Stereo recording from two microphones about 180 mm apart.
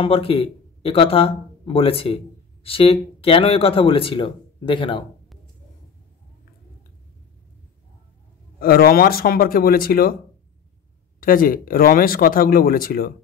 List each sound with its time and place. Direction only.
0.0 s speech: 30° left (ahead or behind)
8.5 s speech: 55° left (ahead or behind)
11.1 s speech: 50° left (ahead or behind)